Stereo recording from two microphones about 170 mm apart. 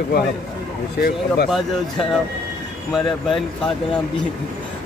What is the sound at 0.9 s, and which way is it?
Speech, 70° left (ahead or behind).